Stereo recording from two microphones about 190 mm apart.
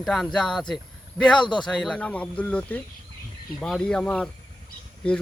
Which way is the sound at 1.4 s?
25° left (ahead or behind).